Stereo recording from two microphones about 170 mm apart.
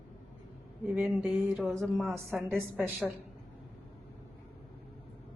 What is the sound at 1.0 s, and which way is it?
A woman's voice, 5° right (ahead or behind).